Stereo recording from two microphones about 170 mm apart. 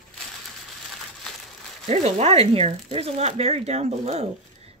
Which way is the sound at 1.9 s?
40° right (ahead or behind).